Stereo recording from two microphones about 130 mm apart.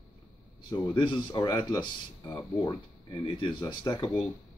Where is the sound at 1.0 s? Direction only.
40° left (ahead or behind).